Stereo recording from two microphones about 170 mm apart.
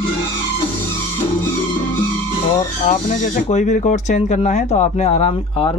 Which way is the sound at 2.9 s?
45° left (ahead or behind).